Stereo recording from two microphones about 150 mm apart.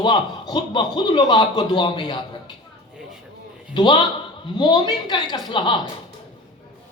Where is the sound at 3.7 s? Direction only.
30° left (ahead or behind).